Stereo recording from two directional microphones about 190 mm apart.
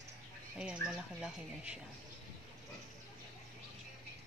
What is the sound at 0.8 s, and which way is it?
Speech, 5° right (ahead or behind).